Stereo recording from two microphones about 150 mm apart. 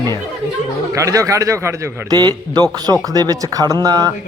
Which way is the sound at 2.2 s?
30° right (ahead or behind).